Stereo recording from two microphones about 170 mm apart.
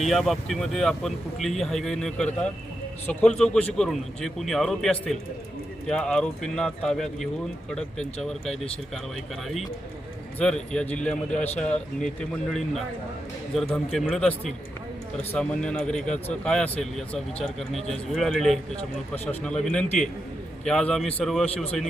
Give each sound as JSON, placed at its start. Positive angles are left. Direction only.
{"t": 0.0, "sound": "speech", "side_deg": 0}
{"t": 3.2, "sound": "speech", "side_deg": 5}
{"t": 10.3, "sound": "speech", "side_deg": 5}
{"t": 13.5, "sound": "speech", "side_deg": 0}